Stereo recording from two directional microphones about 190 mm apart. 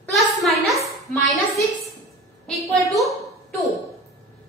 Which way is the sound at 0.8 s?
15° left (ahead or behind).